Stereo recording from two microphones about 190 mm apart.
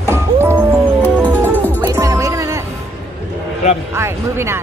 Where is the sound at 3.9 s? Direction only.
15° right (ahead or behind).